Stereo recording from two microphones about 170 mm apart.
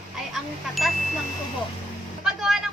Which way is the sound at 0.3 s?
Centre (ahead or behind).